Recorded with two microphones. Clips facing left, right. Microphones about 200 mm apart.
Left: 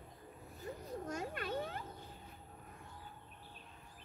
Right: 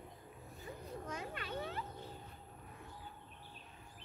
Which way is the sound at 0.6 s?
45° left (ahead or behind).